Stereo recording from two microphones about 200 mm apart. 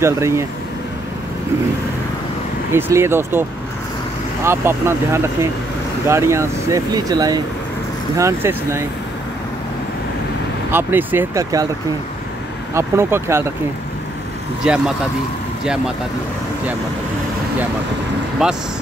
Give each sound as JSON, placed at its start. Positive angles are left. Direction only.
{"t": 0.0, "sound": "speech", "side_deg": -15}
{"t": 2.7, "sound": "speech", "side_deg": -10}
{"t": 4.5, "sound": "speech", "side_deg": -10}
{"t": 10.7, "sound": "speech", "side_deg": -10}
{"t": 12.7, "sound": "speech", "side_deg": -15}
{"t": 14.7, "sound": "speech", "side_deg": -5}
{"t": 18.4, "sound": "speech", "side_deg": -5}